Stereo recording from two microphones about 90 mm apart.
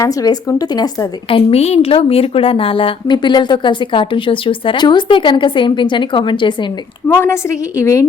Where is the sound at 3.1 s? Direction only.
55° left (ahead or behind).